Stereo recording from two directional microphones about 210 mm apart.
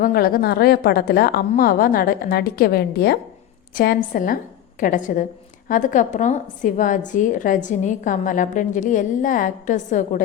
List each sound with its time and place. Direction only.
0.0 s a woman's voice: 45° left (ahead or behind)